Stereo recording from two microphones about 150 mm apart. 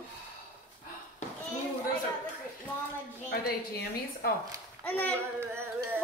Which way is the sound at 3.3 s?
90° left.